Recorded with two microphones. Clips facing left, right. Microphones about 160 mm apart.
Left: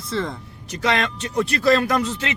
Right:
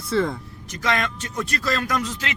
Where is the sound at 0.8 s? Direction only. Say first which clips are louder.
Left 2 dB; 25° left (ahead or behind).